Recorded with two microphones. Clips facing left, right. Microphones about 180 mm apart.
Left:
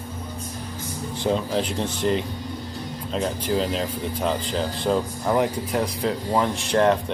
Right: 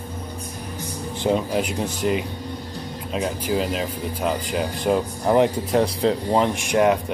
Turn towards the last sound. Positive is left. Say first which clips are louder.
# right 1 dB
turn(degrees=-10)  # may be behind; listen again after turning